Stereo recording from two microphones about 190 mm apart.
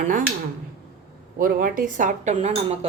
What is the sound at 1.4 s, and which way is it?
A woman's voice, 50° right (ahead or behind).